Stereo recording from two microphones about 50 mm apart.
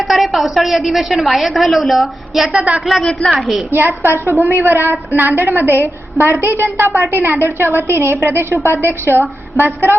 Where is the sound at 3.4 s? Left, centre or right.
Centre.